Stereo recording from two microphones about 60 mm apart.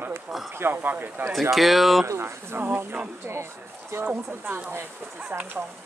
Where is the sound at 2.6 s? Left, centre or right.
Right.